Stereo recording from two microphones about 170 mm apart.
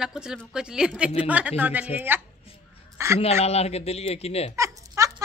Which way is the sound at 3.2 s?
40° left (ahead or behind).